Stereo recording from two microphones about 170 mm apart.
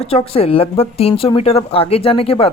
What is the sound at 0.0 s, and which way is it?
Speech, 35° left (ahead or behind).